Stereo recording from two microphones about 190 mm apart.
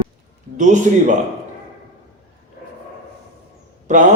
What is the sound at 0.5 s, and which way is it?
Speech, 40° right (ahead or behind).